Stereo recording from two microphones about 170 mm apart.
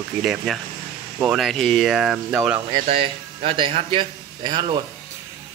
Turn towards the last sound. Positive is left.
turn(degrees=-25)  # may be behind; listen again after turning